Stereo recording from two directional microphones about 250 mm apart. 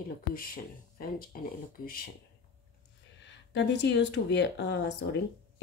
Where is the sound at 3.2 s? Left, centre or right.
Left.